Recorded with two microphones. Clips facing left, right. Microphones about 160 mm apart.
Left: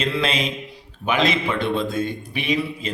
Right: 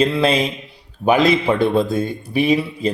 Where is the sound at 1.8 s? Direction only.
35° right (ahead or behind).